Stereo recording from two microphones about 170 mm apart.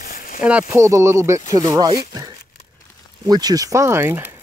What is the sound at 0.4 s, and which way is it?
Speech, 5° right (ahead or behind).